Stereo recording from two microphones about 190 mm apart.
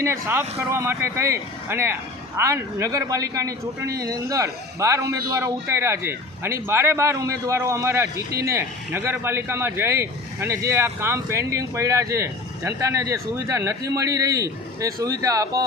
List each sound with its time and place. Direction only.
0.0 s speech: 15° right (ahead or behind)